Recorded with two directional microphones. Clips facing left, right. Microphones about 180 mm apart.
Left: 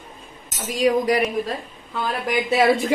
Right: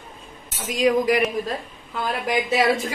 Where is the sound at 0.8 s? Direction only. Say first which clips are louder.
Even; 35° left (ahead or behind).